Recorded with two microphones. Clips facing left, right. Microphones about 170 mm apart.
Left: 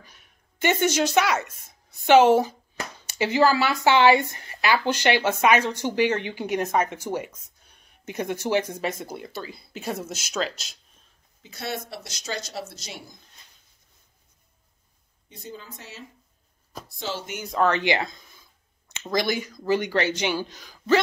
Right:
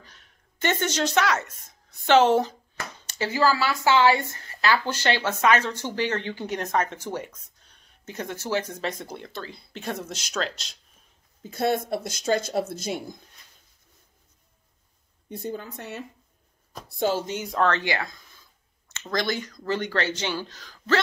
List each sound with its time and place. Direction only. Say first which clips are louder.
0.0 s speech: even; 10° left (ahead or behind)
11.4 s speech: right 8 dB; 50° right (ahead or behind)
15.2 s speech: right 7 dB; 55° right (ahead or behind)
17.5 s speech: left 2 dB; 5° left (ahead or behind)
17.7 s speech: left 4 dB; 20° left (ahead or behind)